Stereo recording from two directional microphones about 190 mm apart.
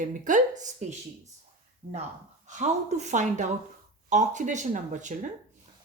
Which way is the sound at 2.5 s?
35° right (ahead or behind).